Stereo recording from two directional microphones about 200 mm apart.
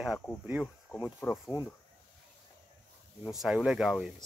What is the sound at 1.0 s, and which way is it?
Speech, 15° left (ahead or behind).